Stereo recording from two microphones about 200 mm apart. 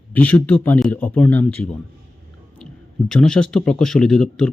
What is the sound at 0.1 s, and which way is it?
A man's voice, 10° left (ahead or behind).